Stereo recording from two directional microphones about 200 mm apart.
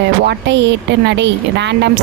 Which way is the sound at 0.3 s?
60° right (ahead or behind).